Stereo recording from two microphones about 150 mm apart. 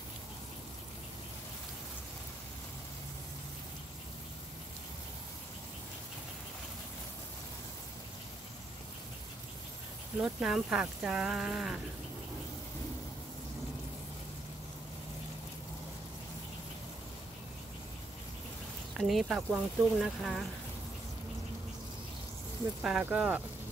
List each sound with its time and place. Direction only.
10.2 s speech: 5° right (ahead or behind)
18.9 s speech: centre (ahead or behind)
22.8 s speech: 5° right (ahead or behind)